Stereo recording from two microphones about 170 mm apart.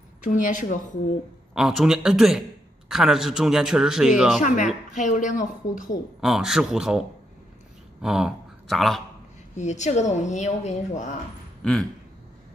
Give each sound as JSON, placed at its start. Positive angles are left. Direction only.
{"t": 0.2, "sound": "a woman's voice", "side_deg": 50}
{"t": 1.5, "sound": "speech", "side_deg": -5}
{"t": 4.4, "sound": "a woman's voice", "side_deg": 50}
{"t": 6.2, "sound": "speech", "side_deg": -5}
{"t": 9.6, "sound": "a woman's voice", "side_deg": 45}